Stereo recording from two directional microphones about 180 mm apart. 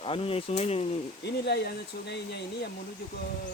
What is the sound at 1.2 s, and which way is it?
Speech, 65° left (ahead or behind).